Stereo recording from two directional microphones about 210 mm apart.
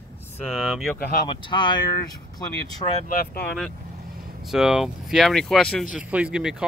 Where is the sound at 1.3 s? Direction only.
20° left (ahead or behind).